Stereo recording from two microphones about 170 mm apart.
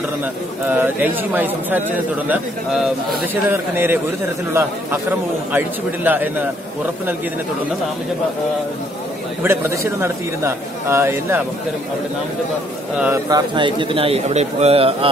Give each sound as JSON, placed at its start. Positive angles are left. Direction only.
{"t": 0.7, "sound": "a man's voice", "side_deg": -10}
{"t": 5.5, "sound": "a man's voice", "side_deg": -10}
{"t": 9.4, "sound": "a man's voice", "side_deg": -15}
{"t": 13.0, "sound": "a man's voice", "side_deg": -15}
{"t": 13.6, "sound": "speech", "side_deg": -30}